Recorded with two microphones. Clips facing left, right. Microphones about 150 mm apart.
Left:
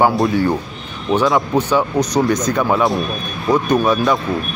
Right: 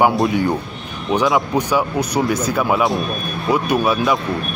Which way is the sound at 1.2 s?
Centre (ahead or behind).